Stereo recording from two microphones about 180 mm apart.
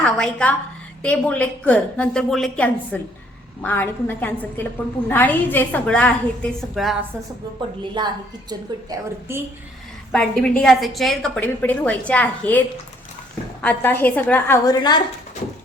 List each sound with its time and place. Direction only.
0.0 s a woman's voice: 5° left (ahead or behind)
8.0 s a woman's voice: 25° right (ahead or behind)
10.1 s a woman's voice: 5° left (ahead or behind)
14.8 s speech: 25° left (ahead or behind)